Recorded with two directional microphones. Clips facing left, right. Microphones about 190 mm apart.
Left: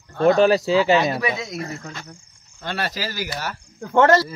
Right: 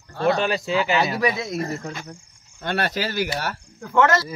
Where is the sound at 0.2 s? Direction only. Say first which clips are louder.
Left 6 dB; 40° left (ahead or behind).